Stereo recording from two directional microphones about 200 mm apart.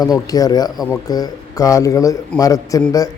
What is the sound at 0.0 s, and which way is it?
A man's voice, 20° left (ahead or behind).